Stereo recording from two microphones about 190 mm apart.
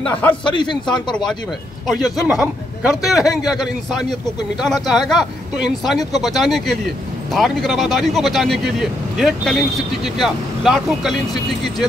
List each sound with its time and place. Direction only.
0.3 s a man's voice: 25° left (ahead or behind)
2.2 s speech: 5° right (ahead or behind)